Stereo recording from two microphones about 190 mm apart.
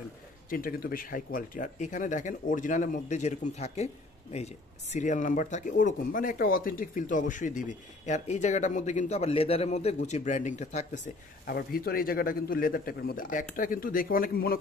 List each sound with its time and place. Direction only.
0.5 s speech: 50° left (ahead or behind)
11.4 s a man's voice: 50° left (ahead or behind)